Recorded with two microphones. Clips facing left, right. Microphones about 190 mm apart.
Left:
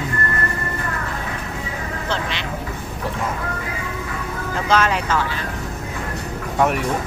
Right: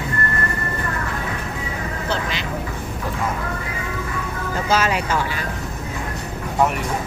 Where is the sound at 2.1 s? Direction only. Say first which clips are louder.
Even; centre (ahead or behind).